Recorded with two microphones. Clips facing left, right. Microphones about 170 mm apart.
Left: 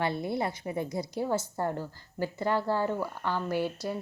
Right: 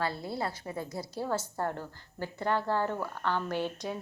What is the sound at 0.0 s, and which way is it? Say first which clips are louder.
A woman's voice: left 3 dB; 20° left (ahead or behind).